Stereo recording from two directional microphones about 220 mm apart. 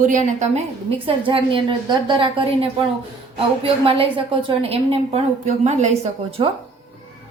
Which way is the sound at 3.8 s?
25° right (ahead or behind).